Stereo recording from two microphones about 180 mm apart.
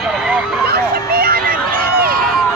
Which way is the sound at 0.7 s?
60° right (ahead or behind).